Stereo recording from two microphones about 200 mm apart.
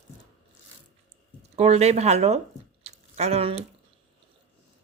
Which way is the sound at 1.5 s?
30° right (ahead or behind).